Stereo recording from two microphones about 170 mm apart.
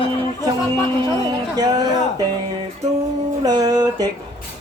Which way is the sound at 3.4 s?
25° right (ahead or behind).